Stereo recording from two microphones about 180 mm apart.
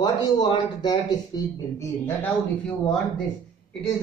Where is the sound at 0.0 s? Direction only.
25° left (ahead or behind).